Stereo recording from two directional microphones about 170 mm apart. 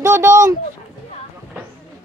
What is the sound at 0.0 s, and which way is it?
Speech, 15° right (ahead or behind).